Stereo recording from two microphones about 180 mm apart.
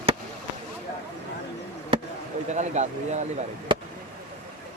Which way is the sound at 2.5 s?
40° right (ahead or behind).